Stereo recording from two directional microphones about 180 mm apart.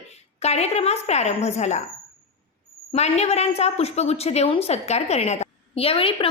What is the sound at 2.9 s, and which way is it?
A woman's voice, 35° left (ahead or behind).